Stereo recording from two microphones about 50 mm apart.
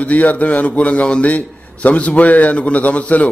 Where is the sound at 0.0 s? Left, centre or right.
Left.